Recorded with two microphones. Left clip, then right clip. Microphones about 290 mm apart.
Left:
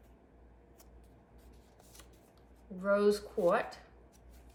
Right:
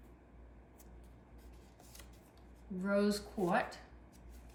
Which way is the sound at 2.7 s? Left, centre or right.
Centre.